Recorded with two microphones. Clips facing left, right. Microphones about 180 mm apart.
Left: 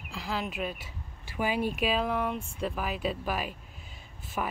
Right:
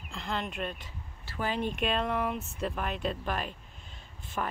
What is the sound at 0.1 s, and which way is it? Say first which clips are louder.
Speech: left 1 dB; 5° left (ahead or behind).